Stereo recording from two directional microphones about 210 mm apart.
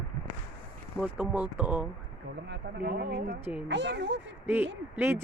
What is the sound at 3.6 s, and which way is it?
Speech, 55° right (ahead or behind).